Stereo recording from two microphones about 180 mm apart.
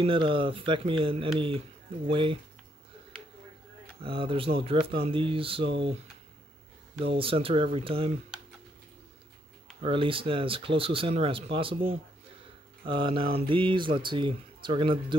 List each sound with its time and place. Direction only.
0.0 s speech: 30° right (ahead or behind)
4.0 s speech: 30° right (ahead or behind)
7.1 s speech: 30° right (ahead or behind)
9.8 s speech: 30° right (ahead or behind)